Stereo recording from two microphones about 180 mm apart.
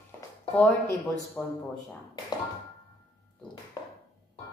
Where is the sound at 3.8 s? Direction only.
25° left (ahead or behind).